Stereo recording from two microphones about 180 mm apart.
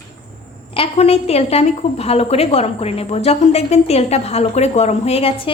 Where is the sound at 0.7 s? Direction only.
30° left (ahead or behind).